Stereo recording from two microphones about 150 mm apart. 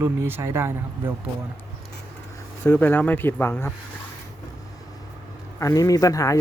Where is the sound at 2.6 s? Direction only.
15° left (ahead or behind).